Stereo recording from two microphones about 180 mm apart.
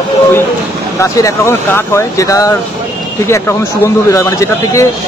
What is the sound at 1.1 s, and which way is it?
Speech, 15° left (ahead or behind).